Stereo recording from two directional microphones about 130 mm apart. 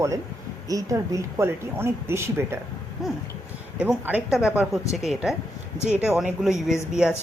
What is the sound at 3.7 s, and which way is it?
Speech, 15° right (ahead or behind).